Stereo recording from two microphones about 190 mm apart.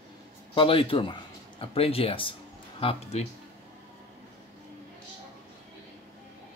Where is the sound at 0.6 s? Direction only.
30° left (ahead or behind).